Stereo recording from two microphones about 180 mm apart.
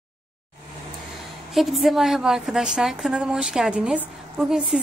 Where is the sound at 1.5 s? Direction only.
Centre (ahead or behind).